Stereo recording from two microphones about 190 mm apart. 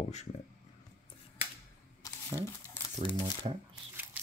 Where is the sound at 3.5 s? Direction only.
30° right (ahead or behind).